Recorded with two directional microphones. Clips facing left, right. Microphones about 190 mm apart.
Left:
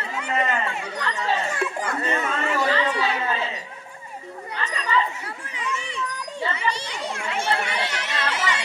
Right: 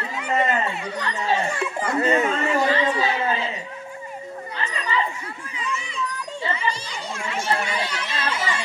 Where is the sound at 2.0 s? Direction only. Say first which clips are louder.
Right 6 dB; 15° right (ahead or behind).